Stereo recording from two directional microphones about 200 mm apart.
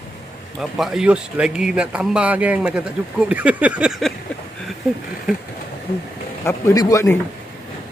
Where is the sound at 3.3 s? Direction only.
5° right (ahead or behind).